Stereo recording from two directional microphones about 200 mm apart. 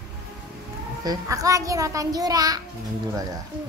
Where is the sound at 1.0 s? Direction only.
15° right (ahead or behind).